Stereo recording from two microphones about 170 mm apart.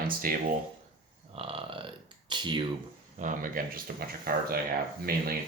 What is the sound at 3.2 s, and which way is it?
Speech, 50° right (ahead or behind).